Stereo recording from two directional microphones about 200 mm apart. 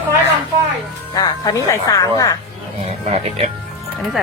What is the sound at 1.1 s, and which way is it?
Speech, 20° left (ahead or behind).